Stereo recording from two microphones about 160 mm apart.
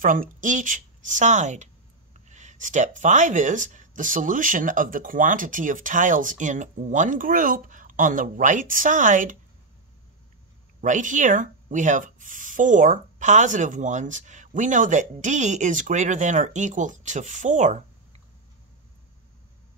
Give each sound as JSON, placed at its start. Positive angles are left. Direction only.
{"t": 0.0, "sound": "speech", "side_deg": -55}
{"t": 10.8, "sound": "speech", "side_deg": -50}